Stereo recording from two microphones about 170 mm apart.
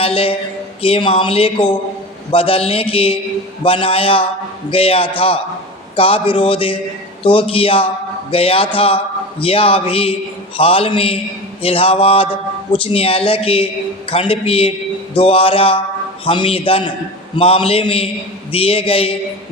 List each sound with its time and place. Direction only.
0.0 s speech: 35° left (ahead or behind)